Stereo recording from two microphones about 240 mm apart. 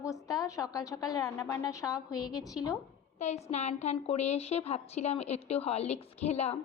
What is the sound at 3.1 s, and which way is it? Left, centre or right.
A woman's voice, left.